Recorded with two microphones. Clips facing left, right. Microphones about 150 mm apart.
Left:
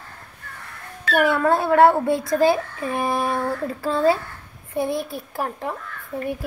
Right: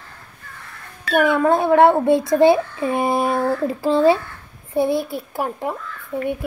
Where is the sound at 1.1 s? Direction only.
20° right (ahead or behind).